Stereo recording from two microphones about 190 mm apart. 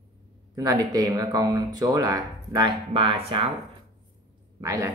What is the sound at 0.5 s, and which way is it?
Speech, 20° right (ahead or behind).